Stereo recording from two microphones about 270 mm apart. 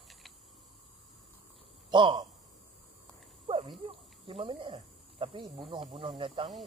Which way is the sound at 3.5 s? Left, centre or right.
Centre.